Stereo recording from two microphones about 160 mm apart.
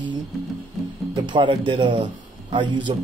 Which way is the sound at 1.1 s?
30° right (ahead or behind).